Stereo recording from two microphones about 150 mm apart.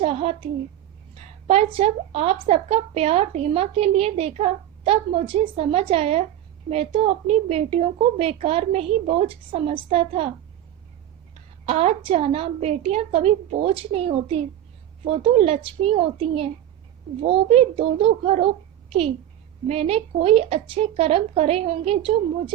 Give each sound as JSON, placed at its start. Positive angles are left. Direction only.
{"t": 0.0, "sound": "a woman's voice", "side_deg": -45}
{"t": 11.6, "sound": "a woman's voice", "side_deg": -45}